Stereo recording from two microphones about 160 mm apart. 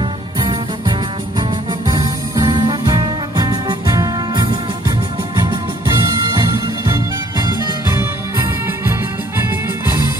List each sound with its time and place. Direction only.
0.4 s music: 30° right (ahead or behind)
2.3 s music: 25° right (ahead or behind)